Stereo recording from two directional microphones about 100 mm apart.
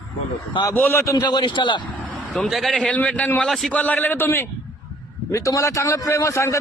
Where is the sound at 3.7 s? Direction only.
15° left (ahead or behind).